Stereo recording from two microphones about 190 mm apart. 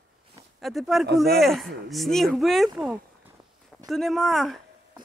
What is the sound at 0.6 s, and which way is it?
Speech, centre (ahead or behind).